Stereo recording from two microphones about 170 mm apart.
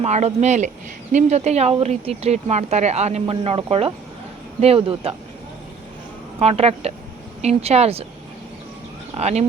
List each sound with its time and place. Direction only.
0.0 s speech: 40° right (ahead or behind)
6.4 s speech: 35° right (ahead or behind)
9.1 s speech: 40° right (ahead or behind)